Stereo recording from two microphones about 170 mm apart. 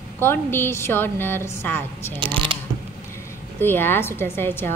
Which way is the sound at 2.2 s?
30° right (ahead or behind).